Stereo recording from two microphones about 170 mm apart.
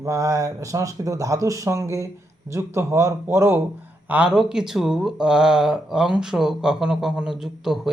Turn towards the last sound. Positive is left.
turn(degrees=0)  # may be behind; listen again after turning